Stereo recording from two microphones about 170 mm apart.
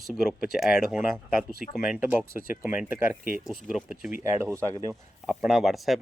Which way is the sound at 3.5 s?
Centre (ahead or behind).